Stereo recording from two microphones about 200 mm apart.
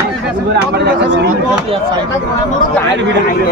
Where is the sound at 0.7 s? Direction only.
60° right (ahead or behind).